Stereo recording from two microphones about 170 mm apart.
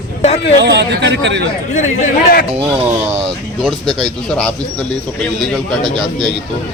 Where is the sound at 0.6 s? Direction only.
90° right.